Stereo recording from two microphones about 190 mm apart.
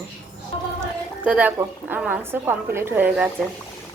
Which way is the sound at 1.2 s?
10° right (ahead or behind).